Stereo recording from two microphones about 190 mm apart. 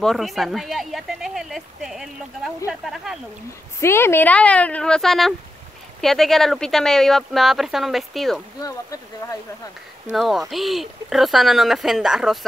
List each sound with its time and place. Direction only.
0.0 s speech: centre (ahead or behind)
3.8 s a woman's voice: 10° left (ahead or behind)
8.5 s a woman's voice: 20° left (ahead or behind)
10.1 s speech: centre (ahead or behind)